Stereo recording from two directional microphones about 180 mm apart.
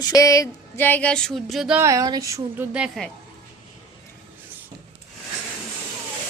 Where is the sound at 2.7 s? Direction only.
5° right (ahead or behind).